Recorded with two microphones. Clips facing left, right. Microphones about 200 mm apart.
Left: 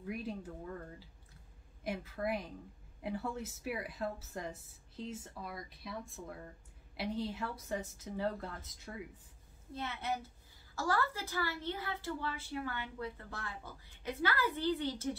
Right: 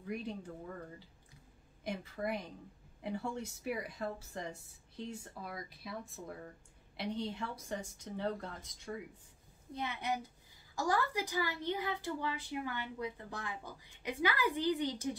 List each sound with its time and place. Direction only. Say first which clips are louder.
0.0 s a woman's voice: even; 5° left (ahead or behind)
9.8 s speech: right 1 dB; 15° right (ahead or behind)